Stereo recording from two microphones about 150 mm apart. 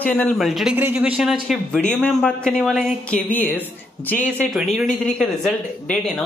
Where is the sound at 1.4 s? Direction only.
5° left (ahead or behind).